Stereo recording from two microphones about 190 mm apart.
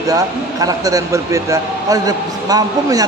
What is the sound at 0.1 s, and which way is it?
Speech, 20° right (ahead or behind).